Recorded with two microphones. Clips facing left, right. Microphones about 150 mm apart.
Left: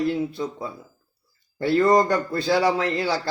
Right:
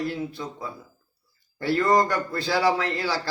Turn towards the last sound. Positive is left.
turn(degrees=25)  # may be behind; listen again after turning